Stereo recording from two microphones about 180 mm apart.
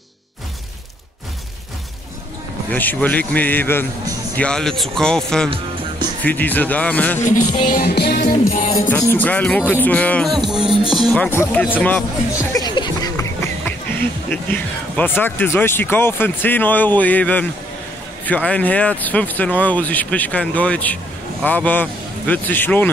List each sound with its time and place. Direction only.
2.7 s speech: 10° left (ahead or behind)
5.5 s music: 25° right (ahead or behind)
6.2 s speech: 10° left (ahead or behind)
7.7 s music: 60° left (ahead or behind)
8.9 s speech: 10° left (ahead or behind)
10.4 s music: centre (ahead or behind)
11.1 s speech: 10° left (ahead or behind)